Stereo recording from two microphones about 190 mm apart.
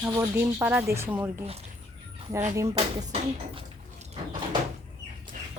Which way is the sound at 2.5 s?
15° right (ahead or behind).